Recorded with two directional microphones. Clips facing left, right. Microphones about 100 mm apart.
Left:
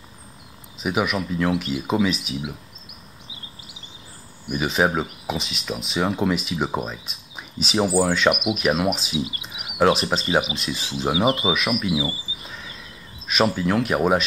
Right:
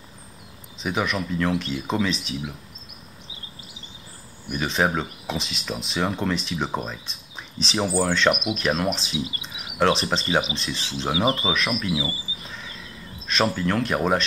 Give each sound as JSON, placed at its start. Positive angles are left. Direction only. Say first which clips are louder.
{"t": 0.7, "sound": "speech", "louder": "left 2 dB", "side_deg": 5}
{"t": 4.5, "sound": "speech", "louder": "left 2 dB", "side_deg": 5}
{"t": 11.9, "sound": "speech", "louder": "left 2 dB", "side_deg": 25}
{"t": 12.4, "sound": "a sound", "louder": "left 1 dB", "side_deg": 5}
{"t": 13.3, "sound": "speech", "louder": "left 2 dB", "side_deg": 5}